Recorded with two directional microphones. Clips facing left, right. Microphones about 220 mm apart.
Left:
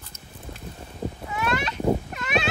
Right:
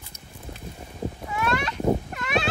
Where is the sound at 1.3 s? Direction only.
20° left (ahead or behind).